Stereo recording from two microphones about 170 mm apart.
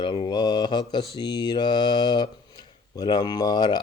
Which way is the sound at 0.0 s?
30° left (ahead or behind).